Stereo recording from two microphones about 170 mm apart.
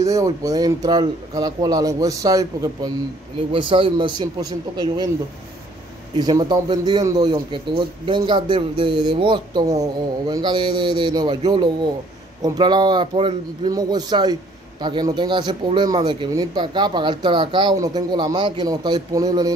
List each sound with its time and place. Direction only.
0.0 s speech: 20° right (ahead or behind)
6.1 s speech: 25° right (ahead or behind)